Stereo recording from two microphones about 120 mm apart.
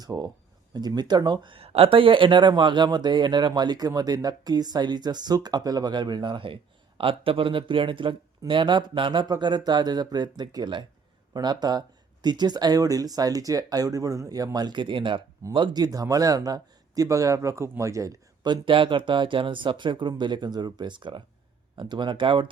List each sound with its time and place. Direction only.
0.0 s speech: 30° right (ahead or behind)
18.4 s speech: 40° right (ahead or behind)